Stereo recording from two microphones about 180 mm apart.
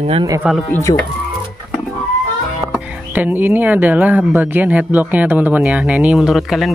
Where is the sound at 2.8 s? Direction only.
10° right (ahead or behind).